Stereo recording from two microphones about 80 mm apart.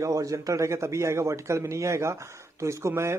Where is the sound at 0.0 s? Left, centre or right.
Right.